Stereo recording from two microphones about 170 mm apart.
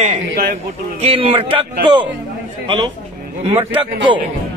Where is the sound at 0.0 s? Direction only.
45° right (ahead or behind).